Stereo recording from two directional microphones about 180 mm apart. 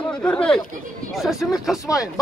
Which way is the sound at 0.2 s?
5° left (ahead or behind).